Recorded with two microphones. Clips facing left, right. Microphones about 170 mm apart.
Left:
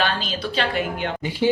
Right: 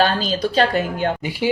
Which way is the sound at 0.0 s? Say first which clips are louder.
Right 6 dB; 40° right (ahead or behind).